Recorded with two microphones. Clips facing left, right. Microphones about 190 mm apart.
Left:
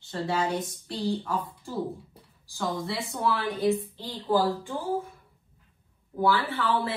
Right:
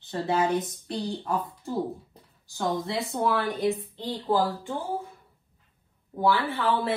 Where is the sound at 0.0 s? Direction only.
20° right (ahead or behind).